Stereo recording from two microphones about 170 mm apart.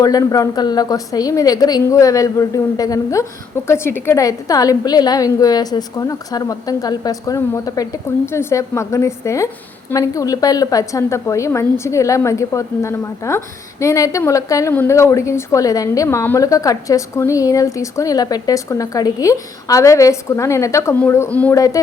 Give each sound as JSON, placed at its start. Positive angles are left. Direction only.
{"t": 0.0, "sound": "a woman's voice", "side_deg": 20}